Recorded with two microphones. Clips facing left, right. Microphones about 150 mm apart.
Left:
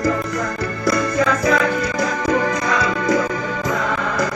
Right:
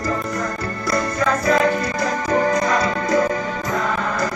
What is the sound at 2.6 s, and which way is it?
Music, 40° right (ahead or behind).